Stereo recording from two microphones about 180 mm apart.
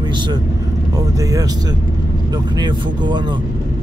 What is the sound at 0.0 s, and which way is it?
Speech, 25° right (ahead or behind).